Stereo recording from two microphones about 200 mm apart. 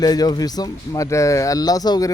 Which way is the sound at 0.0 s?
20° left (ahead or behind).